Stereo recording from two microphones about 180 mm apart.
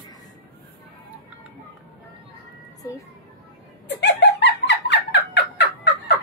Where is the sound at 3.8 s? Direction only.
70° left (ahead or behind).